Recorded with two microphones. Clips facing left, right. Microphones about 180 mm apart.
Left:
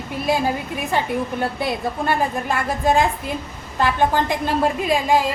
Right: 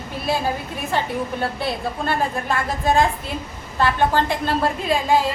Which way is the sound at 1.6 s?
15° left (ahead or behind).